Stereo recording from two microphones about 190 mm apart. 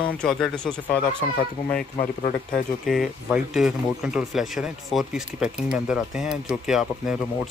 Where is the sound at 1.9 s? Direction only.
35° left (ahead or behind).